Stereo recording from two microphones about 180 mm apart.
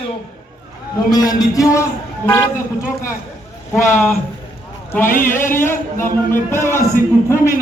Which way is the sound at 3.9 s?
40° left (ahead or behind).